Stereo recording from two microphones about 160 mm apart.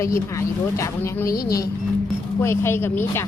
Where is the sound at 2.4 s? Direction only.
15° left (ahead or behind).